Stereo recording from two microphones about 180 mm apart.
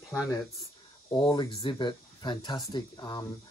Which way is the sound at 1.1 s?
25° left (ahead or behind).